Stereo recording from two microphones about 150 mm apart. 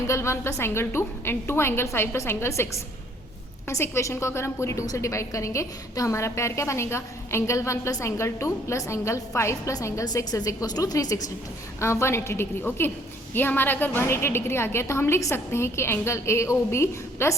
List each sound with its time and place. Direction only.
0.1 s a woman's voice: 20° left (ahead or behind)
3.7 s a woman's voice: 20° left (ahead or behind)